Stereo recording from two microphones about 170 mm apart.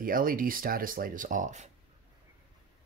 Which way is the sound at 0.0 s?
55° right (ahead or behind).